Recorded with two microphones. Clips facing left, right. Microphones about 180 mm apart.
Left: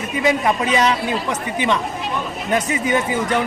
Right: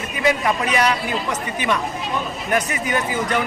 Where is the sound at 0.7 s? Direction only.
20° left (ahead or behind).